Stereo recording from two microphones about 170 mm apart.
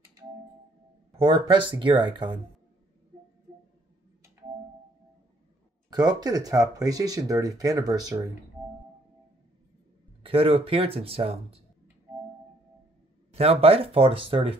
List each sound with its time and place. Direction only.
1.1 s speech: 25° right (ahead or behind)
5.9 s speech: 25° right (ahead or behind)
10.2 s speech: 35° right (ahead or behind)
13.3 s speech: 35° right (ahead or behind)